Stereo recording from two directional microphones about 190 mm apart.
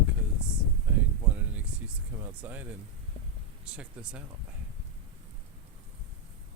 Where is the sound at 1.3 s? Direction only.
10° right (ahead or behind).